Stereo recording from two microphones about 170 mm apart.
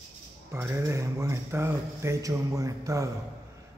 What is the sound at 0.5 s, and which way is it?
A man's voice, 15° right (ahead or behind).